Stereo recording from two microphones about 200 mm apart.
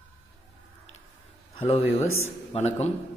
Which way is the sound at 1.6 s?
30° left (ahead or behind).